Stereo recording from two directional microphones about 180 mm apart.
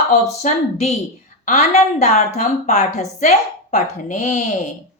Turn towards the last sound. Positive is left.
turn(degrees=40)  # may be behind; listen again after turning